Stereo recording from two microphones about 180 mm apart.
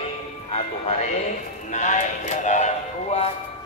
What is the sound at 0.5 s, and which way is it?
Speech, 35° left (ahead or behind).